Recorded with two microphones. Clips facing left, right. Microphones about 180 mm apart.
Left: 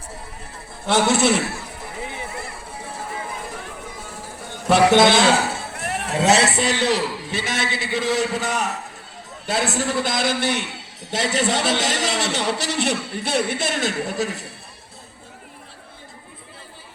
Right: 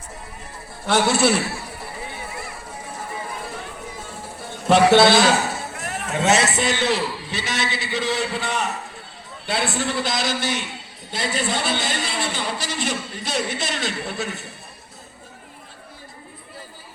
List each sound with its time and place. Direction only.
0.9 s a man's voice: 20° left (ahead or behind)
4.6 s a man's voice: 15° left (ahead or behind)
6.1 s a man's voice: 35° left (ahead or behind); by 10.7 s 60° left (ahead or behind)
11.1 s a man's voice: 85° left; by 14.4 s 35° left (ahead or behind)